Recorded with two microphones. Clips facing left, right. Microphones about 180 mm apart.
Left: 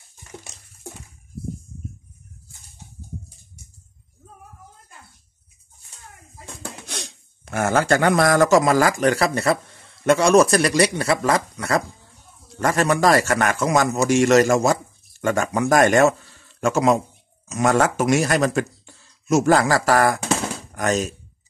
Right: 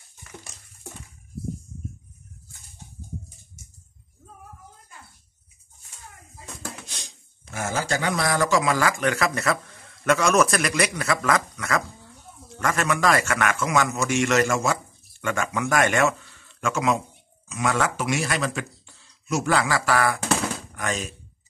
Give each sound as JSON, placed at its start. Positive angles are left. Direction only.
{"t": 6.9, "sound": "a man's voice", "side_deg": 65}